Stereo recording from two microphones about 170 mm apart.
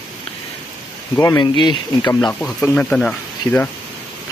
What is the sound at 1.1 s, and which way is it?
Speech, 15° left (ahead or behind).